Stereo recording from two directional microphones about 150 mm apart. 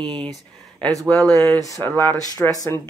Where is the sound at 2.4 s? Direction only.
15° left (ahead or behind).